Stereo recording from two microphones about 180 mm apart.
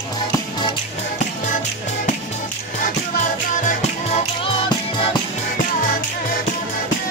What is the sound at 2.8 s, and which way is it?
Music, 45° left (ahead or behind).